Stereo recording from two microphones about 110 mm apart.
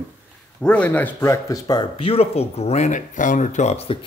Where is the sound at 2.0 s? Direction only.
60° left (ahead or behind).